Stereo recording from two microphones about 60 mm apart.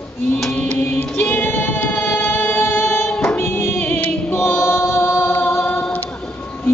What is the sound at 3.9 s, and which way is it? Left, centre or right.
Singing, left.